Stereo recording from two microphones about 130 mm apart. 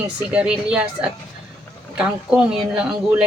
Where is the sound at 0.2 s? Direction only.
10° right (ahead or behind).